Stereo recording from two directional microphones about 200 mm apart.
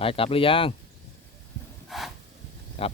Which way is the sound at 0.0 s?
25° left (ahead or behind).